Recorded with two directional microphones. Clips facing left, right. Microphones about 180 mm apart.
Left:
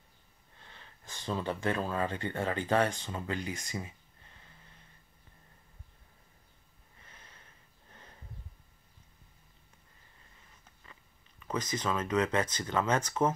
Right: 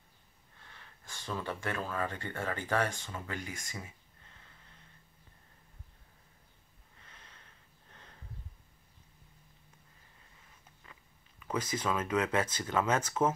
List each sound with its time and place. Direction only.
0.6 s speech: 20° left (ahead or behind)
7.1 s a sound: 10° left (ahead or behind)
11.4 s speech: 5° right (ahead or behind)